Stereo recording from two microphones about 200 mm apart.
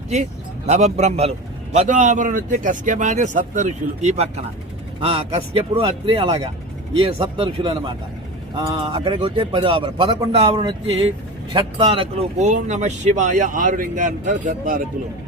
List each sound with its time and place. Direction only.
0.7 s a man's voice: 35° right (ahead or behind)